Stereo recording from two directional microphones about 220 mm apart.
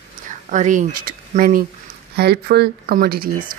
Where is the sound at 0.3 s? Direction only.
35° right (ahead or behind).